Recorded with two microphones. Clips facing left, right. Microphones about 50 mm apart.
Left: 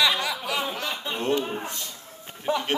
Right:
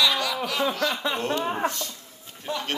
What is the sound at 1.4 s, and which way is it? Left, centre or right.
Speech, right.